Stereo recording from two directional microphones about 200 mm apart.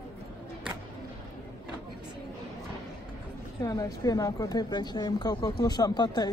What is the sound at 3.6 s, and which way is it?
A woman's voice, 20° left (ahead or behind).